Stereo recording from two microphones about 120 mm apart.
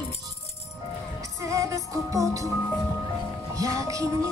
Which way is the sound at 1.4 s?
25° right (ahead or behind).